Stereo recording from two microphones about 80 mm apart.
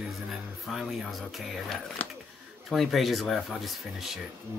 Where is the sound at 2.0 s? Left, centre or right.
Left.